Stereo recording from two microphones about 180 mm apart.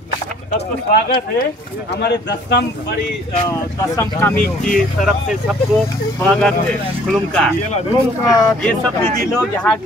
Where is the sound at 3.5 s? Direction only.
15° left (ahead or behind).